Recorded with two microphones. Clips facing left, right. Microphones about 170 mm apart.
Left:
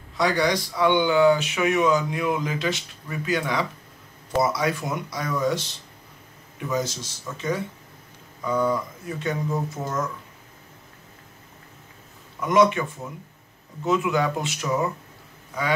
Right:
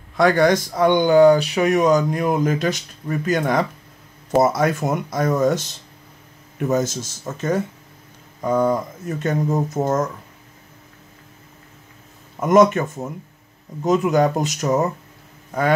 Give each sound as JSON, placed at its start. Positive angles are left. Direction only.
{"t": 0.2, "sound": "speech", "side_deg": -50}
{"t": 12.4, "sound": "speech", "side_deg": -45}